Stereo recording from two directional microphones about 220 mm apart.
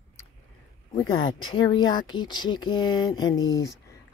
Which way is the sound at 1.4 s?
65° left (ahead or behind).